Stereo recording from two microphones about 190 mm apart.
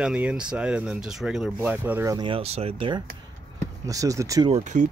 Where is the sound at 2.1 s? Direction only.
30° right (ahead or behind).